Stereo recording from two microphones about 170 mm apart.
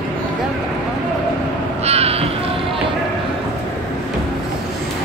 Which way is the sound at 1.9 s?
35° right (ahead or behind).